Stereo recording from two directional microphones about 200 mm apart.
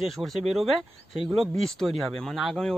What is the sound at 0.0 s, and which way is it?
Speech, centre (ahead or behind).